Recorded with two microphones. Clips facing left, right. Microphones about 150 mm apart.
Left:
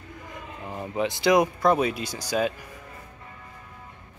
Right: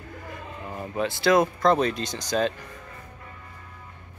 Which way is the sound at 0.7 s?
15° left (ahead or behind).